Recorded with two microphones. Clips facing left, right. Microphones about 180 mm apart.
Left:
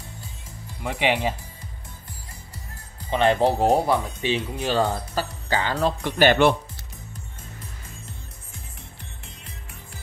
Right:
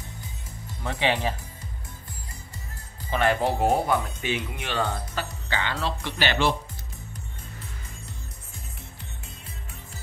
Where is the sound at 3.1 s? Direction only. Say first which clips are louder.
Left 4 dB; 25° left (ahead or behind); by 6.5 s 55° left (ahead or behind).